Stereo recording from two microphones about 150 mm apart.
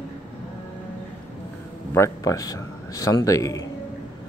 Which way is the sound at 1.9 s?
20° left (ahead or behind).